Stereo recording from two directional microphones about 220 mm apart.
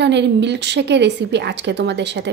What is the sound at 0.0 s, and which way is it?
Speech, 50° right (ahead or behind).